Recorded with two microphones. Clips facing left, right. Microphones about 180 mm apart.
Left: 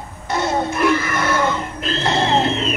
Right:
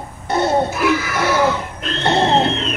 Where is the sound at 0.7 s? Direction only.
5° right (ahead or behind).